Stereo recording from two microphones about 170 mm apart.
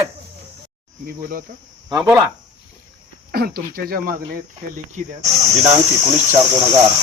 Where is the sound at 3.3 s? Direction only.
60° right (ahead or behind).